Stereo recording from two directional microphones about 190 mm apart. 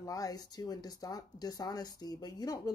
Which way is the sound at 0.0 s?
20° left (ahead or behind).